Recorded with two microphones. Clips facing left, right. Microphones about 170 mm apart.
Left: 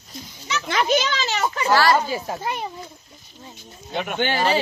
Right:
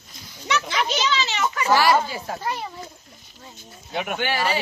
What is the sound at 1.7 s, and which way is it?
Speech, 15° right (ahead or behind).